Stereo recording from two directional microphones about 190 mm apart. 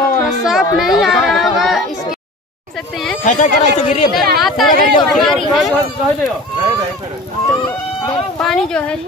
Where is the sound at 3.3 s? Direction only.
40° left (ahead or behind).